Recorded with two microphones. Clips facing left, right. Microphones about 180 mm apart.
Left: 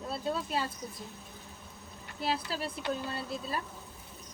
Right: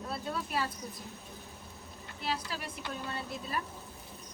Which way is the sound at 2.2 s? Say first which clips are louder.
Left 4 dB; 35° left (ahead or behind).